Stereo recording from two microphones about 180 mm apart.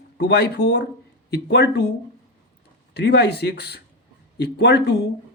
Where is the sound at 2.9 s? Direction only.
65° left (ahead or behind).